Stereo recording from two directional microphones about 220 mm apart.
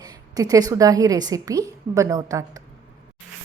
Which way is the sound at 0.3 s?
15° right (ahead or behind).